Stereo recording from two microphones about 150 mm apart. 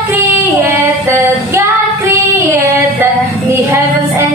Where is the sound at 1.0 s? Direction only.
15° right (ahead or behind).